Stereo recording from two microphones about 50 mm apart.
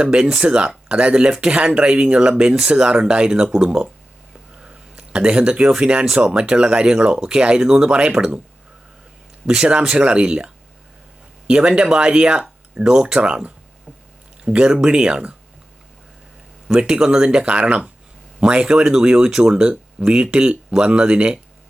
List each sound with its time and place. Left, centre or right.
0.0 s speech: centre
9.5 s speech: centre
16.6 s speech: centre